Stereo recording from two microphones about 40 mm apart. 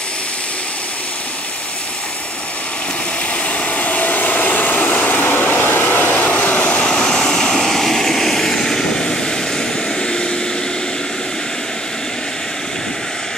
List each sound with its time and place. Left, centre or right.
3.4 s vehicle: left
6.1 s vehicle: left
6.8 s vehicle: left
7.5 s vehicle: centre